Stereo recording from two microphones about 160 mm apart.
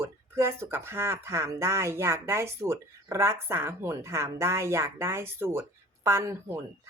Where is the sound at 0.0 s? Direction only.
15° right (ahead or behind).